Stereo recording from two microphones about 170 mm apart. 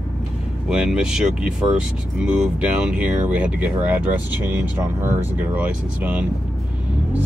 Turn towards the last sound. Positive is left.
turn(degrees=-10)  # may be behind; listen again after turning